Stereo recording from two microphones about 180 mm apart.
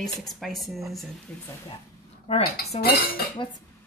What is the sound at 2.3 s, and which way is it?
Speech, 35° left (ahead or behind).